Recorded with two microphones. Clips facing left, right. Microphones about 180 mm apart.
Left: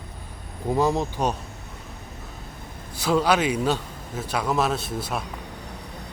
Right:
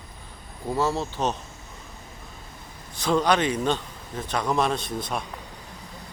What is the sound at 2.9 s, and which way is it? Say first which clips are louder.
A man's voice: left 1 dB; 5° left (ahead or behind).